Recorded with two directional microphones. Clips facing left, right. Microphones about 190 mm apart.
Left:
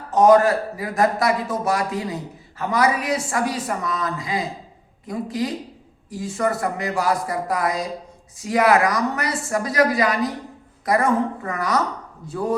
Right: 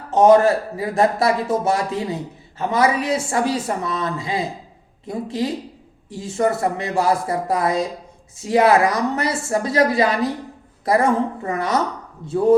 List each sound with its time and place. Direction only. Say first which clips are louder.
0.1 s speech: right 2 dB; 25° right (ahead or behind)